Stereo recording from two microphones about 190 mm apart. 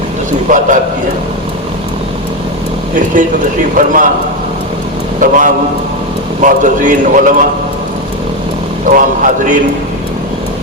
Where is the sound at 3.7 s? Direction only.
45° right (ahead or behind).